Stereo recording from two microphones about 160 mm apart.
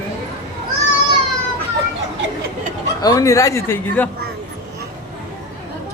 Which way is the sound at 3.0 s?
20° left (ahead or behind).